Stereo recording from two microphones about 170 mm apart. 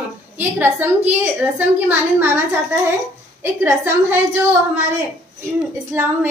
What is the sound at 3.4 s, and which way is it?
Speech, 15° right (ahead or behind).